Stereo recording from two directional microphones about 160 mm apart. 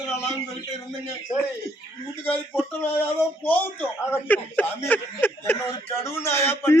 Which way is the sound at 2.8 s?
15° left (ahead or behind).